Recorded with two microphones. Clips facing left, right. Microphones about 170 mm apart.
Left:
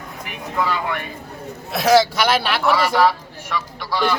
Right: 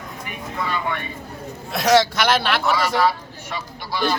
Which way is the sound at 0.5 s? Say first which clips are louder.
Left 3 dB; 85° left.